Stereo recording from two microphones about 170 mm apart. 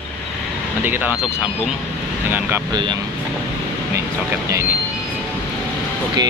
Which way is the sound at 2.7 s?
25° right (ahead or behind).